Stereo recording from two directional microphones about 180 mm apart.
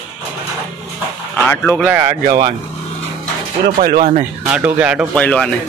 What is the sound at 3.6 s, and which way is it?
Speech, 55° right (ahead or behind).